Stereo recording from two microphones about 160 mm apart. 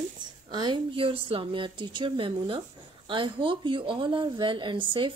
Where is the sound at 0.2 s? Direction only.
30° right (ahead or behind).